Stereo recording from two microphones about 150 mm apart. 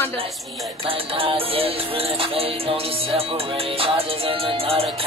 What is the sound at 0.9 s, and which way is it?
Music, 40° right (ahead or behind).